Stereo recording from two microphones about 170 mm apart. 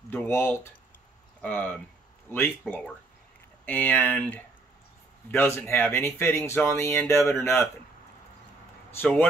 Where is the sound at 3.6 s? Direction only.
10° left (ahead or behind).